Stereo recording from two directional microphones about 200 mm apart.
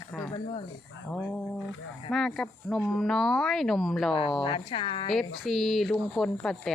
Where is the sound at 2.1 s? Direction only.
Centre (ahead or behind).